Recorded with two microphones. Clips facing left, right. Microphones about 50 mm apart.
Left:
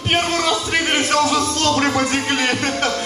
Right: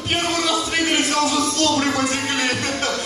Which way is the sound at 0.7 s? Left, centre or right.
Left.